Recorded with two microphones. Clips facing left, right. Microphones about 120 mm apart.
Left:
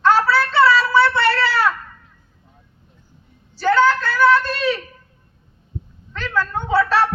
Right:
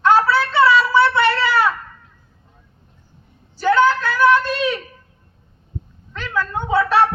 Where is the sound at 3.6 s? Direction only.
15° right (ahead or behind).